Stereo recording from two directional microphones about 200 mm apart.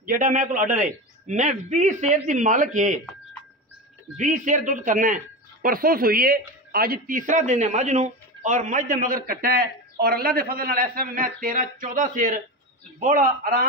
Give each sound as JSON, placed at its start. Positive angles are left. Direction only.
{"t": 0.0, "sound": "a man's voice", "side_deg": -45}
{"t": 4.2, "sound": "a man's voice", "side_deg": -40}